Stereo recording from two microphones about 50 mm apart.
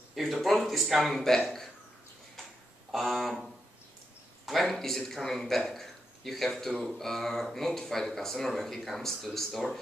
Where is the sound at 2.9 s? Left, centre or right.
Centre.